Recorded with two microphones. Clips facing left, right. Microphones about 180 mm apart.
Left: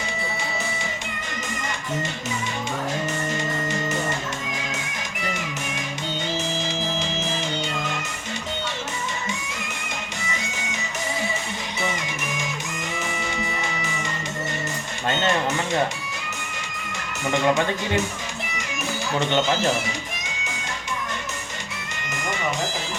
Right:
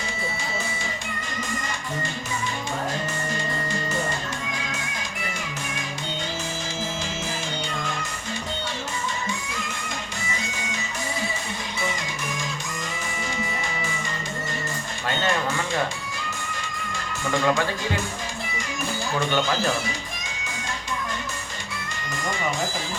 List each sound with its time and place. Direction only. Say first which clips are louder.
6.6 s music: left 3 dB; 20° left (ahead or behind)
10.5 s music: even; 20° left (ahead or behind)
15.0 s a sound: left 2 dB; 20° left (ahead or behind)
16.9 s speech: left 2 dB; 20° left (ahead or behind)
19.2 s speech: left 3 dB; 20° left (ahead or behind)
22.1 s music: even; 20° left (ahead or behind)